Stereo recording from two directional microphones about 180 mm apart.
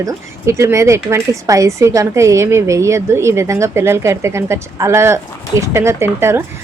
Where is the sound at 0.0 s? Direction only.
15° right (ahead or behind).